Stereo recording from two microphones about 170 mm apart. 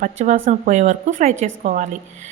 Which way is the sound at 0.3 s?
45° right (ahead or behind).